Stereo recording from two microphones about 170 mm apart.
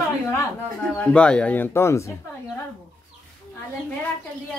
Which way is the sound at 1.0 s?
5° left (ahead or behind).